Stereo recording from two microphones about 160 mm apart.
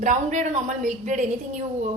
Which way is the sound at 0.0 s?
50° right (ahead or behind).